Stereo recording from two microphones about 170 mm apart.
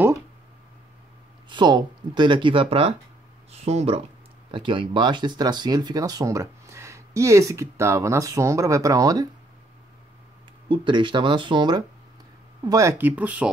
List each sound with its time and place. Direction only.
1.5 s speech: 25° right (ahead or behind)
10.7 s speech: 30° right (ahead or behind); by 13.5 s 10° right (ahead or behind)